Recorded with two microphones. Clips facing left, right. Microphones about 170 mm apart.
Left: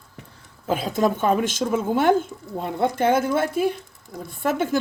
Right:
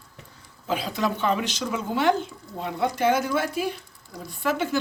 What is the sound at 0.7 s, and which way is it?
Speech, 50° left (ahead or behind).